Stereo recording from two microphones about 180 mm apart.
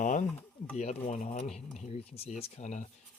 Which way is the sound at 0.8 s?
40° left (ahead or behind).